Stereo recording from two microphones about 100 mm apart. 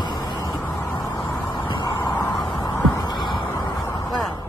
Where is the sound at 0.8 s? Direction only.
20° left (ahead or behind).